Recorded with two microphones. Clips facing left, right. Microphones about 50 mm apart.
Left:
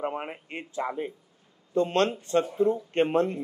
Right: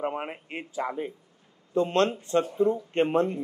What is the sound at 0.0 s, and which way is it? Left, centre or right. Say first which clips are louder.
Speech: right 1 dB; centre.